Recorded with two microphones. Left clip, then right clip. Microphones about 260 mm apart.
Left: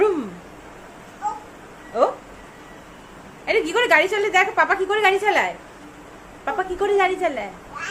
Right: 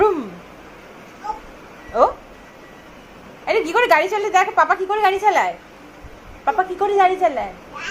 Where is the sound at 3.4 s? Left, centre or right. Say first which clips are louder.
Right 2 dB; centre.